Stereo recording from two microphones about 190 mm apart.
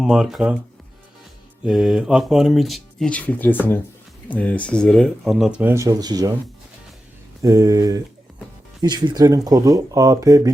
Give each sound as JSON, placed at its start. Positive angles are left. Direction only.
{"t": 0.0, "sound": "speech", "side_deg": 0}
{"t": 1.6, "sound": "speech", "side_deg": 0}
{"t": 7.4, "sound": "speech", "side_deg": -15}